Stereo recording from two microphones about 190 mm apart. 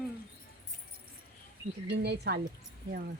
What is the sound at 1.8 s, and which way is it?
Speech, 60° right (ahead or behind).